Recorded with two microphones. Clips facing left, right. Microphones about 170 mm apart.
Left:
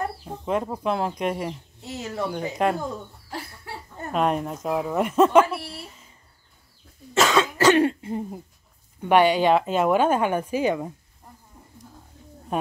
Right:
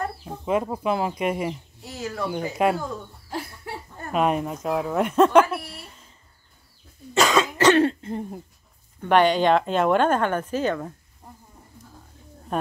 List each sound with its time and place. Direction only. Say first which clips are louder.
0.5 s a woman's voice: right 1 dB; 5° right (ahead or behind)
1.8 s speech: left 4 dB; 25° left (ahead or behind)
2.5 s a woman's voice: right 2 dB; 5° right (ahead or behind)
4.1 s a woman's voice: right 1 dB; 5° right (ahead or behind)
7.2 s cough: even; centre (ahead or behind)
7.7 s cough: even; 10° left (ahead or behind)
9.0 s speech: even; 10° left (ahead or behind)